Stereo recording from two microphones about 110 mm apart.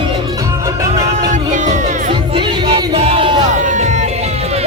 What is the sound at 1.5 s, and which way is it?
Music, 90° right.